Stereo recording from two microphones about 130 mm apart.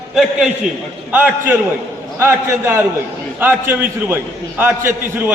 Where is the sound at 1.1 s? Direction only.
15° right (ahead or behind).